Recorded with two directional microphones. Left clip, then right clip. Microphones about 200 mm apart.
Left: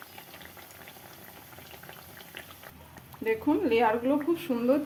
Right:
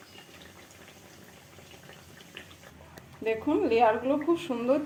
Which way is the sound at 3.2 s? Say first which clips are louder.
Even; 30° left (ahead or behind).